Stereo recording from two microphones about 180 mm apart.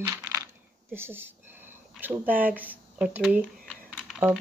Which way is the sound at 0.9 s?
10° right (ahead or behind).